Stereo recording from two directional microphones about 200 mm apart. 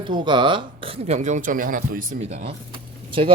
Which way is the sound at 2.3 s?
35° right (ahead or behind).